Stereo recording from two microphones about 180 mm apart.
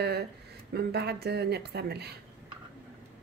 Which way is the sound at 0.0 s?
65° right (ahead or behind).